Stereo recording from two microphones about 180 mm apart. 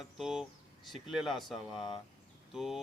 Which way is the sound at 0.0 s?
Centre (ahead or behind).